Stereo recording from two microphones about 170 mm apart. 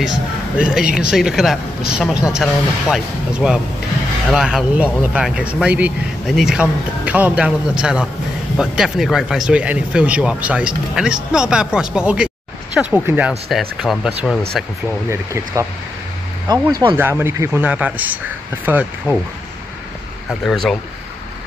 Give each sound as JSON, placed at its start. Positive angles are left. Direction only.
{"t": 0.0, "sound": "speech", "side_deg": -5}
{"t": 16.4, "sound": "speech", "side_deg": -25}
{"t": 20.2, "sound": "speech", "side_deg": 0}